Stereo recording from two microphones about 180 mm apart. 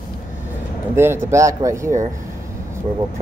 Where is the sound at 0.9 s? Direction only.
15° right (ahead or behind).